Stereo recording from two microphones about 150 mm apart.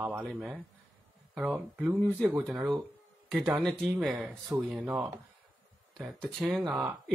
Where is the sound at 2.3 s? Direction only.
10° right (ahead or behind).